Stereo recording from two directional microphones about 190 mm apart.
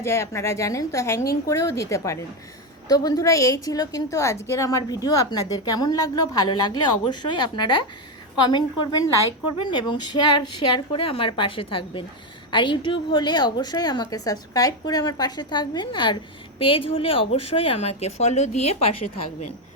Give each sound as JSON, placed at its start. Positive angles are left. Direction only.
{"t": 0.0, "sound": "a woman's voice", "side_deg": 15}